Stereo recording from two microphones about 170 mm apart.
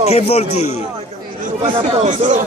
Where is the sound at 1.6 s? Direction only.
45° right (ahead or behind).